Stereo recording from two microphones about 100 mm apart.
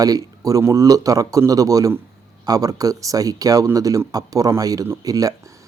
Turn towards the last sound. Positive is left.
turn(degrees=-35)  # may be behind; listen again after turning